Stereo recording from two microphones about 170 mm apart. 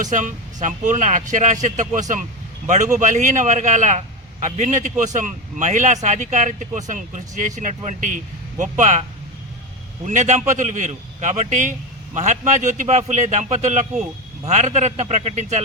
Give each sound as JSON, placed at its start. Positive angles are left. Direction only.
{"t": 0.0, "sound": "a man's voice", "side_deg": -50}
{"t": 10.1, "sound": "a man's voice", "side_deg": -45}